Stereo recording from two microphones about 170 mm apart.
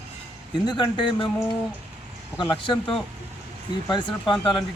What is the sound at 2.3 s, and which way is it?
Speech, 25° left (ahead or behind).